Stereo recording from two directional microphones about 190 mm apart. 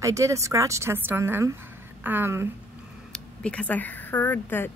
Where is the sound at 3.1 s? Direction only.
5° left (ahead or behind).